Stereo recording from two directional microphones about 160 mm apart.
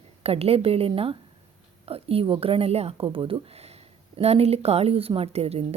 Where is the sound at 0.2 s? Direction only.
40° right (ahead or behind).